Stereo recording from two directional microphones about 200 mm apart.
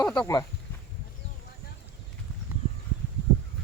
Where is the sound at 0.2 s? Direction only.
20° left (ahead or behind).